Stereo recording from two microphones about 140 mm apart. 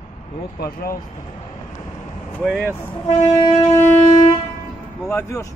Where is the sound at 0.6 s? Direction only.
90° left.